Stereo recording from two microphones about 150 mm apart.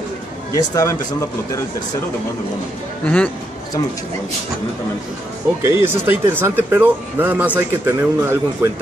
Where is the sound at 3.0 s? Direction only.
10° left (ahead or behind).